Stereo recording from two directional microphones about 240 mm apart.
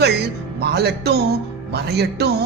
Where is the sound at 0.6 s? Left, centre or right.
Right.